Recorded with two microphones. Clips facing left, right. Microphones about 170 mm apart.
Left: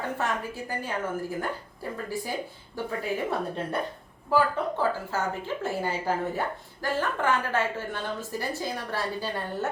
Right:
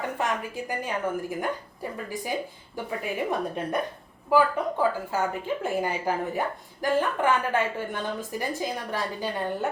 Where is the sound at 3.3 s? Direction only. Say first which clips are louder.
Right 2 dB; 15° right (ahead or behind).